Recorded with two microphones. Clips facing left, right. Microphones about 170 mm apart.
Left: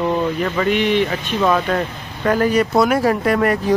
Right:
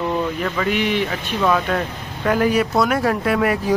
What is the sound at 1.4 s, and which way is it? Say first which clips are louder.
Speech: left 2 dB; 5° left (ahead or behind).